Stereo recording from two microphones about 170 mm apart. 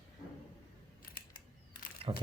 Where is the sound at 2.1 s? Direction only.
30° right (ahead or behind).